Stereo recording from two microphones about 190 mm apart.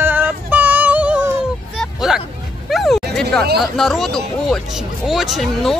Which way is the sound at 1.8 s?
Centre (ahead or behind).